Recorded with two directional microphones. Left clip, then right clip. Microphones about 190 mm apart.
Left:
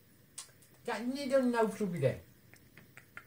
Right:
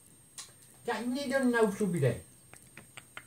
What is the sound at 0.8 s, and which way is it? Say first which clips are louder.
Speech: right 3 dB; 15° left (ahead or behind).